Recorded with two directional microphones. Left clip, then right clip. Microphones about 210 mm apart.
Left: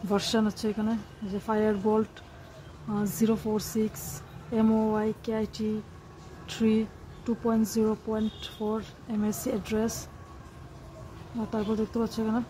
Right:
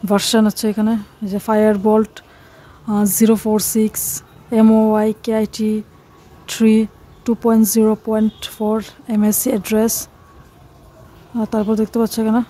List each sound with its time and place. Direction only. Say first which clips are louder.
0.1 s speech: right 12 dB; 50° right (ahead or behind)
11.5 s speech: right 12 dB; 50° right (ahead or behind)